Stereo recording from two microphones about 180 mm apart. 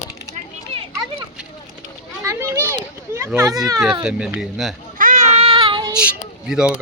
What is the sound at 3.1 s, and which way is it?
Speech, 15° right (ahead or behind).